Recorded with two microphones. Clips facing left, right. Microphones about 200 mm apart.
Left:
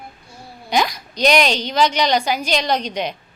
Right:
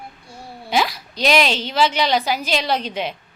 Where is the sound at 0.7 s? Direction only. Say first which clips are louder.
Left 1 dB; centre (ahead or behind).